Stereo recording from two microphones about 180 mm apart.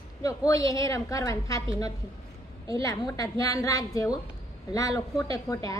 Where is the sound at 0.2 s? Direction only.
20° left (ahead or behind).